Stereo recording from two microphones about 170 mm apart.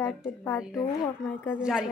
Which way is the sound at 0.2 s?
15° left (ahead or behind).